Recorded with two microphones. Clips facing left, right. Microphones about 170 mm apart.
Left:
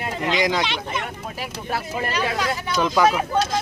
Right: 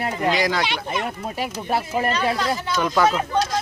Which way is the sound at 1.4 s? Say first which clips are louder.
Right 4 dB; 30° right (ahead or behind).